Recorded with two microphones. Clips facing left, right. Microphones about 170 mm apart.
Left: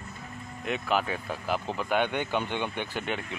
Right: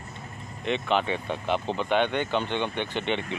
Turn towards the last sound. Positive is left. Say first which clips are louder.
# right 4 dB
turn(degrees=5)  # may be behind; listen again after turning